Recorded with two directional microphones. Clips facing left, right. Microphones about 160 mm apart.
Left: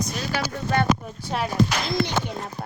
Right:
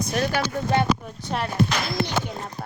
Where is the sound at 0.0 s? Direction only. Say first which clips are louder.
Right 4 dB; 55° right (ahead or behind).